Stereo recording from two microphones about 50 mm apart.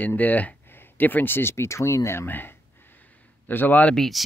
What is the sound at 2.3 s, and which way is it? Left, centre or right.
Speech, left.